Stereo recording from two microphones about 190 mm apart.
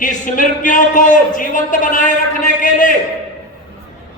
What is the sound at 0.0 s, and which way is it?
A man's voice, 45° left (ahead or behind).